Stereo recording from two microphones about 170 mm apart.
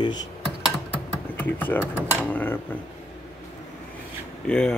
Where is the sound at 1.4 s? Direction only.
10° left (ahead or behind).